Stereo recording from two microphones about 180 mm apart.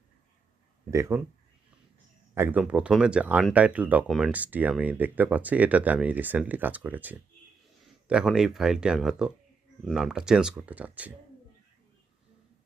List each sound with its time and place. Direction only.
0.9 s speech: 15° right (ahead or behind)
2.3 s speech: 10° right (ahead or behind)